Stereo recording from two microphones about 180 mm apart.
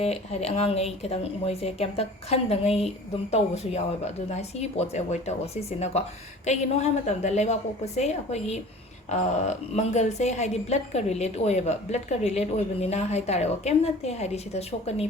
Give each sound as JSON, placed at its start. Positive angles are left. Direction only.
{"t": 0.0, "sound": "a woman's voice", "side_deg": 35}